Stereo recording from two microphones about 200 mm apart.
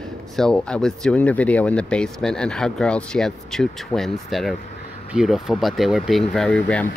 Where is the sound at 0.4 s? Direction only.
5° left (ahead or behind).